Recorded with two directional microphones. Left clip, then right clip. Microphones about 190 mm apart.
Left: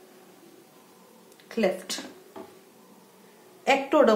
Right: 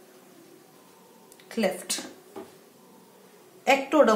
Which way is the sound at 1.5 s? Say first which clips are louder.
Left 1 dB; 20° left (ahead or behind).